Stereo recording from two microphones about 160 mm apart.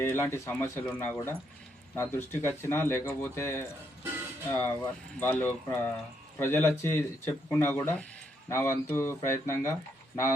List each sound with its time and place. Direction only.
0.0 s speech: 15° left (ahead or behind)